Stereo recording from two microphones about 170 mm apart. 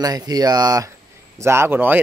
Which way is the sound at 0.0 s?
20° right (ahead or behind).